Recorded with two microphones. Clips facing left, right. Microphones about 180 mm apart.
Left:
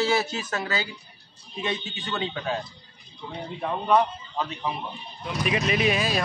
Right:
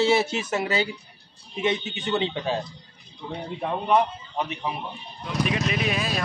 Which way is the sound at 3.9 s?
15° right (ahead or behind).